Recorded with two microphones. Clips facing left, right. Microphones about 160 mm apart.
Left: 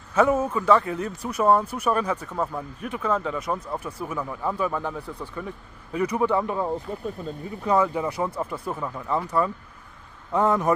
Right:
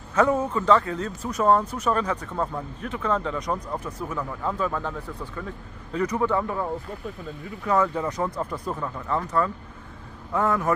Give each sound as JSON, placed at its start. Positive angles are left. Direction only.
{"t": 0.1, "sound": "a man's voice", "side_deg": 10}